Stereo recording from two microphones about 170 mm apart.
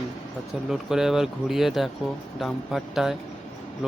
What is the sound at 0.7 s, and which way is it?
Speech, 5° right (ahead or behind).